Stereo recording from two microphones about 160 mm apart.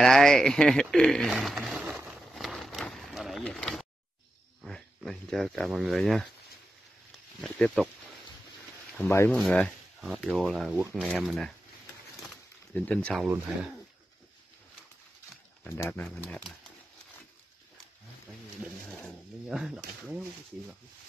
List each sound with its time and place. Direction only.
0.0 s a sound: 5° left (ahead or behind)
4.6 s speech: centre (ahead or behind)
7.4 s speech: 5° left (ahead or behind)
8.9 s speech: 10° left (ahead or behind)
12.7 s speech: 10° left (ahead or behind)
15.6 s speech: 10° left (ahead or behind)
18.9 s a sound: 5° left (ahead or behind)